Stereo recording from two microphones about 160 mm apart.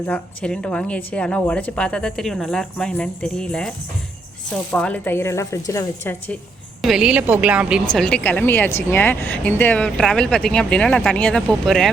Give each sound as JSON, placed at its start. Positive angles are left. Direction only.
{"t": 0.1, "sound": "a woman's voice", "side_deg": 5}
{"t": 6.8, "sound": "a woman's voice", "side_deg": -5}
{"t": 7.9, "sound": "a woman's voice", "side_deg": 5}